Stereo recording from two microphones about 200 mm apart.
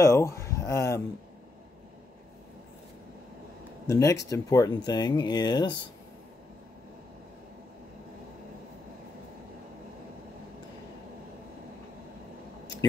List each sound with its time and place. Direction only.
0.0 s speech: 15° left (ahead or behind)
3.8 s speech: 15° left (ahead or behind)